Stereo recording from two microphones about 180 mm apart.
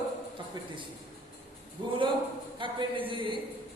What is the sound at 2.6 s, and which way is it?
Speech, 25° right (ahead or behind).